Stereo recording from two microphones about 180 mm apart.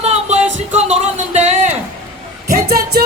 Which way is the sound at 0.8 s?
40° right (ahead or behind).